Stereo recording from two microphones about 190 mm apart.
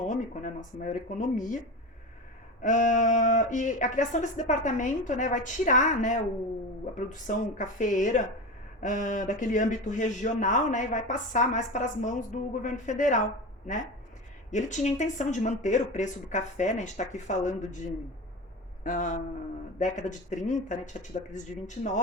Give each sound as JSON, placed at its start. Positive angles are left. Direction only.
{"t": 0.0, "sound": "speech", "side_deg": 40}
{"t": 2.6, "sound": "speech", "side_deg": 40}
{"t": 14.5, "sound": "a man's voice", "side_deg": 40}